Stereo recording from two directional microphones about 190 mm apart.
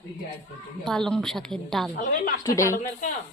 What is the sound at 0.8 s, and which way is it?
A woman's voice, 5° left (ahead or behind).